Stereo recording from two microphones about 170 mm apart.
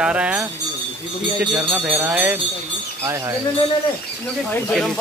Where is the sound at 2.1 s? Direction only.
10° right (ahead or behind).